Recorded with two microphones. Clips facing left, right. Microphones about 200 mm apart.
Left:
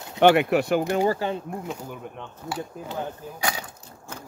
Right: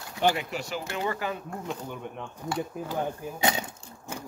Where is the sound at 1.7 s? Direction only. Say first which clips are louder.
Left 1 dB; 5° left (ahead or behind).